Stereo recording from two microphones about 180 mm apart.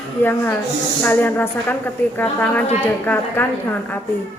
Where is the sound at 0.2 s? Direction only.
10° left (ahead or behind).